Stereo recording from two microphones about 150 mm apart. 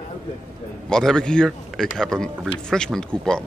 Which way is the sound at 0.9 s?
5° left (ahead or behind).